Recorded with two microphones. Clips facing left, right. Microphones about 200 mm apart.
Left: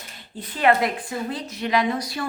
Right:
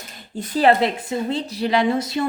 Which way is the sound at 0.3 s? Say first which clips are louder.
Right 4 dB; 40° right (ahead or behind).